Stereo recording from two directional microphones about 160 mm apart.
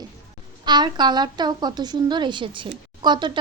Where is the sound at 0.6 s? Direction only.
25° right (ahead or behind).